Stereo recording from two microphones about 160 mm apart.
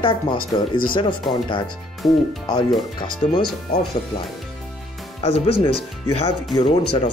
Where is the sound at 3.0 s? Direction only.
30° left (ahead or behind).